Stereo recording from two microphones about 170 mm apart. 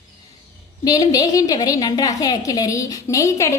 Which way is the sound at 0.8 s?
20° left (ahead or behind).